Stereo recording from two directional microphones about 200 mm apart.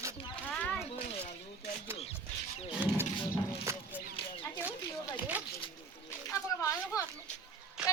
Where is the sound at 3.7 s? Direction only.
15° right (ahead or behind).